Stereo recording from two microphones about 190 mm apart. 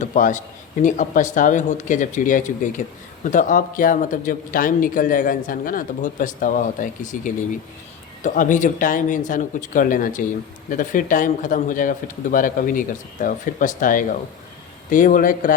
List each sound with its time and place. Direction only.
0.0 s a man's voice: 40° left (ahead or behind)